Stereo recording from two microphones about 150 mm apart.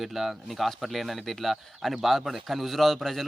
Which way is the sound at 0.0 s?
Centre (ahead or behind).